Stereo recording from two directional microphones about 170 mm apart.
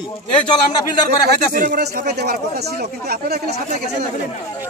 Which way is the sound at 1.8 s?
65° right (ahead or behind).